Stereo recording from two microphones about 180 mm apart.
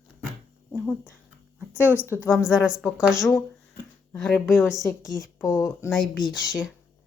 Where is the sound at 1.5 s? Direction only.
10° right (ahead or behind).